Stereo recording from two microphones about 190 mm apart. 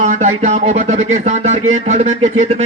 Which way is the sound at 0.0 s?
40° right (ahead or behind).